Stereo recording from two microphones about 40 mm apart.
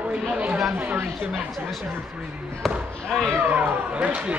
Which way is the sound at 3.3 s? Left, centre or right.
Right.